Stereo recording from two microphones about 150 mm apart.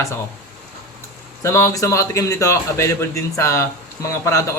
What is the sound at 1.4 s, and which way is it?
Speech, 20° left (ahead or behind).